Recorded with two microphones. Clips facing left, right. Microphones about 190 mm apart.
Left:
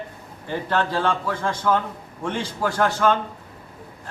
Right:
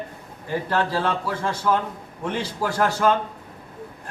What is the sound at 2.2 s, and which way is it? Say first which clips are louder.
Speech: left 1 dB; 5° right (ahead or behind).